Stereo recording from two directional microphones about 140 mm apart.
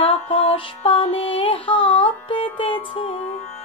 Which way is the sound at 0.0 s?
40° left (ahead or behind).